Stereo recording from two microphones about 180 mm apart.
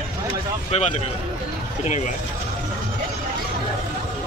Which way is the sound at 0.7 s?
40° left (ahead or behind).